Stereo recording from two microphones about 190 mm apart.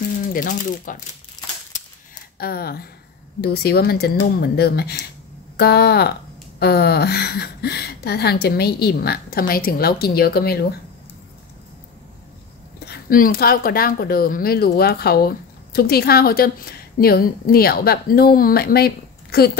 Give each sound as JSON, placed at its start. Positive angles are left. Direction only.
{"t": 0.3, "sound": "a woman's voice", "side_deg": 45}
{"t": 2.3, "sound": "a woman's voice", "side_deg": 55}
{"t": 12.8, "sound": "a woman's voice", "side_deg": 55}